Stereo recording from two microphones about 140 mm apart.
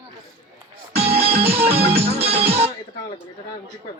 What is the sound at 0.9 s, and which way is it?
Music, 45° right (ahead or behind).